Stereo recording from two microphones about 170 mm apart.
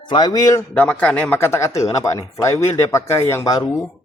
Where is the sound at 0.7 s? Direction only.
10° left (ahead or behind).